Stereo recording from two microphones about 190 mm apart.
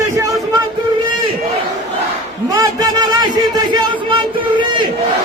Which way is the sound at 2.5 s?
20° right (ahead or behind).